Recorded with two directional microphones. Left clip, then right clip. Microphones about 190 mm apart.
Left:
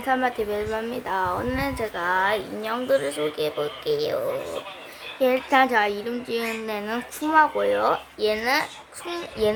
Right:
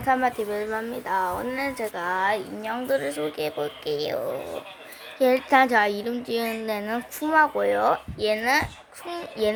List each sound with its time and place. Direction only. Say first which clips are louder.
0.0 s a woman's voice: even; 15° right (ahead or behind)
5.2 s a woman's voice: right 1 dB; 20° right (ahead or behind)